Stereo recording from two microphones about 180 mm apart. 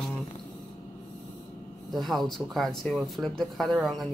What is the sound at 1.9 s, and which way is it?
Speech, centre (ahead or behind).